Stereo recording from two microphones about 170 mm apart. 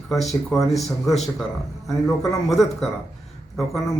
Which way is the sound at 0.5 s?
Centre (ahead or behind).